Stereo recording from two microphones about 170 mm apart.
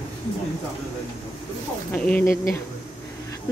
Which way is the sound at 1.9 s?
10° left (ahead or behind).